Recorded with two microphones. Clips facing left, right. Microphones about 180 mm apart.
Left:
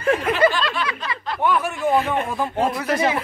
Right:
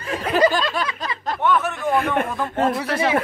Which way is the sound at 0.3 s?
40° right (ahead or behind).